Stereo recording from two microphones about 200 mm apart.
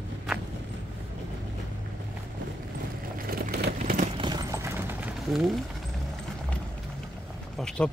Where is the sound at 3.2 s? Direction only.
45° right (ahead or behind).